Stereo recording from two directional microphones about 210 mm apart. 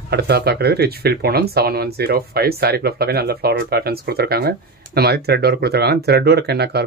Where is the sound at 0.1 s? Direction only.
50° right (ahead or behind).